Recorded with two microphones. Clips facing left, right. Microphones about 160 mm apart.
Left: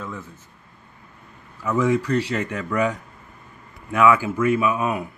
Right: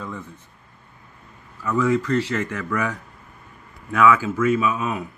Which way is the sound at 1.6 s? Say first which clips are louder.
Even; 20° left (ahead or behind).